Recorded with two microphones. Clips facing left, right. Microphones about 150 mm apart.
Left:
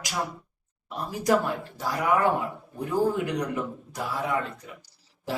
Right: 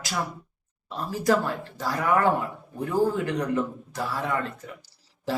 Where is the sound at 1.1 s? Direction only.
15° left (ahead or behind).